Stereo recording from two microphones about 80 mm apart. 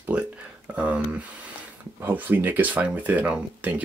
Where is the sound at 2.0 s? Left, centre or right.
Right.